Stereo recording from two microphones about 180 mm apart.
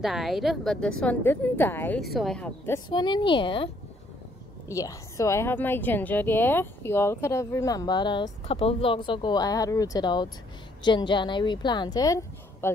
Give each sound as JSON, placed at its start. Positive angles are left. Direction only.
{"t": 0.0, "sound": "a woman's voice", "side_deg": 0}
{"t": 2.0, "sound": "a woman's voice", "side_deg": 0}
{"t": 2.9, "sound": "a woman's voice", "side_deg": 25}
{"t": 4.6, "sound": "a woman's voice", "side_deg": 15}